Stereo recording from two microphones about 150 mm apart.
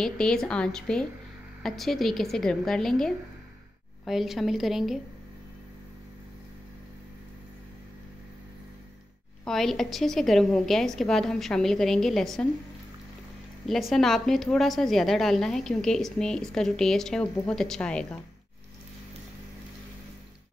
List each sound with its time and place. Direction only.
0.0 s a woman's voice: 5° left (ahead or behind)
9.4 s a woman's voice: centre (ahead or behind)
13.7 s a woman's voice: centre (ahead or behind)